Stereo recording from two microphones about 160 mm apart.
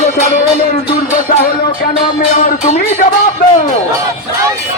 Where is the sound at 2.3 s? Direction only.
55° left (ahead or behind).